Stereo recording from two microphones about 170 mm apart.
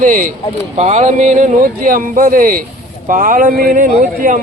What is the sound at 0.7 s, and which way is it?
A man's voice, 40° right (ahead or behind).